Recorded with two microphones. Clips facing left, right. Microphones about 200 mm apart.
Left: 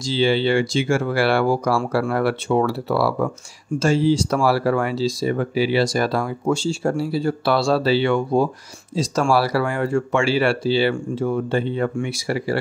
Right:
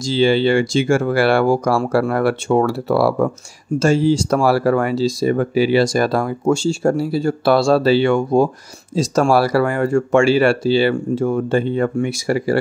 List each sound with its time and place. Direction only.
0.0 s speech: 45° right (ahead or behind)